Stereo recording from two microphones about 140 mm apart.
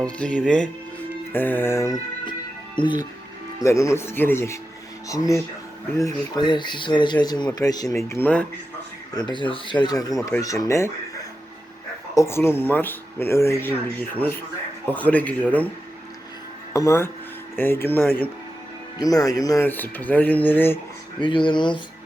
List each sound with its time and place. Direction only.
0.0 s speech: 10° left (ahead or behind)
2.8 s speech: 35° left (ahead or behind)
3.6 s speech: 20° left (ahead or behind)
9.1 s speech: 35° left (ahead or behind)
12.1 s speech: 20° left (ahead or behind)
16.7 s speech: 20° left (ahead or behind)
18.9 s speech: 25° left (ahead or behind)
19.6 s speech: 15° left (ahead or behind)
21.2 s speech: 35° left (ahead or behind)